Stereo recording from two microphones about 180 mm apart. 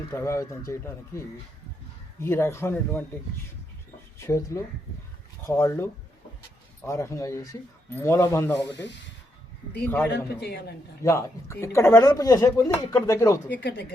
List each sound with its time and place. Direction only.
0.1 s speech: 15° left (ahead or behind)
2.2 s speech: 15° left (ahead or behind)
4.2 s speech: 15° left (ahead or behind)
10.1 s a man's voice: 65° left (ahead or behind)
11.0 s speech: 15° left (ahead or behind)
13.6 s speech: 65° left (ahead or behind)